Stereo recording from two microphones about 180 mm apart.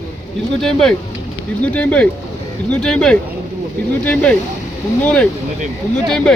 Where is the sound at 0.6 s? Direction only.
5° left (ahead or behind).